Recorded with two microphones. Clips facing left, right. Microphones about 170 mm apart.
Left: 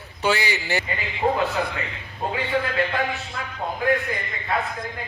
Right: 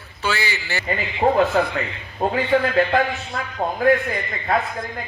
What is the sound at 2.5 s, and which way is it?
Speech, 50° right (ahead or behind).